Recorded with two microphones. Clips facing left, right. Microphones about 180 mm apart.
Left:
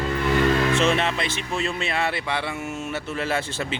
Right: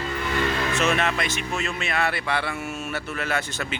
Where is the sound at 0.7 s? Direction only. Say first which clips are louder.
Left 2 dB; 30° left (ahead or behind).